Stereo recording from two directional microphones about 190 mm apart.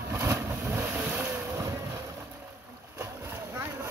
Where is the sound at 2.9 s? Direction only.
15° right (ahead or behind).